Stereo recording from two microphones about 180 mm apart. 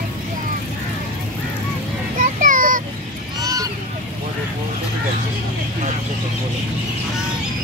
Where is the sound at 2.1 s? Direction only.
50° right (ahead or behind).